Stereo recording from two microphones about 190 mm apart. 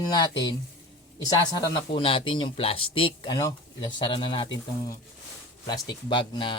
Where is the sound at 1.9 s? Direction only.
25° left (ahead or behind).